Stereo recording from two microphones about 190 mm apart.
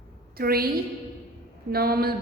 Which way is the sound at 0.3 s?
50° right (ahead or behind).